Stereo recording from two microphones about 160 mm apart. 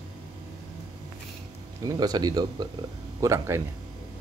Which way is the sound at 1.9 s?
25° right (ahead or behind).